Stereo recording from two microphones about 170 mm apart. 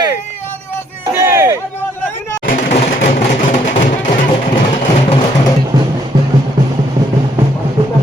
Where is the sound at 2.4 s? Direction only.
50° left (ahead or behind).